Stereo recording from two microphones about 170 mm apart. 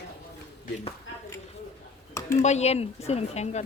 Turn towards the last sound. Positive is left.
turn(degrees=40)  # may be behind; listen again after turning